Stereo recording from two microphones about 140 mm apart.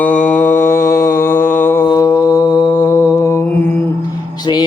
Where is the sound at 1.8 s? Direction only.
25° left (ahead or behind).